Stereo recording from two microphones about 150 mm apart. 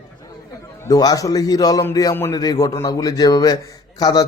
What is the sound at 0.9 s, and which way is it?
A man's voice, 25° left (ahead or behind).